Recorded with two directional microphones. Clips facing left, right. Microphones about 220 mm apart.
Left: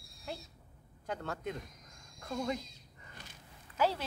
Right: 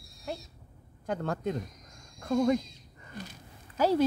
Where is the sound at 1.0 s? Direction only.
45° right (ahead or behind).